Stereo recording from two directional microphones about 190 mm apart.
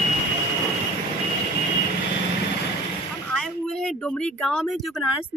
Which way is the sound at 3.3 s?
5° left (ahead or behind).